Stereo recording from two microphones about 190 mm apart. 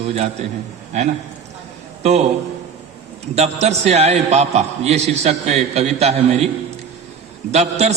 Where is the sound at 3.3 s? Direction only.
35° right (ahead or behind).